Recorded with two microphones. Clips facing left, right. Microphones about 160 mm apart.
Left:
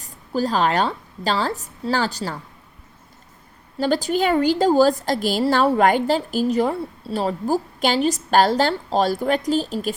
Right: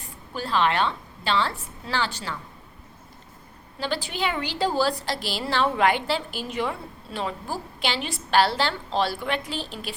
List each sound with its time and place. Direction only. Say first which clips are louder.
0.0 s a woman's voice: left 10 dB; 40° left (ahead or behind)
3.8 s a woman's voice: left 9 dB; 45° left (ahead or behind)